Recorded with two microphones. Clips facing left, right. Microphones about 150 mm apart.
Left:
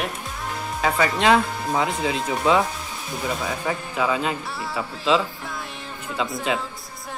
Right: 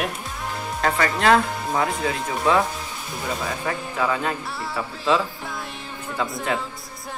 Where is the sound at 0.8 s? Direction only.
15° left (ahead or behind).